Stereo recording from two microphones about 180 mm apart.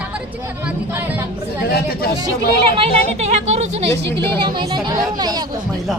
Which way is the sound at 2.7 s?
35° right (ahead or behind).